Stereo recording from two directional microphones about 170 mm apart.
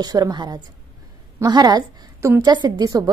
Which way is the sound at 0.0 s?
25° right (ahead or behind).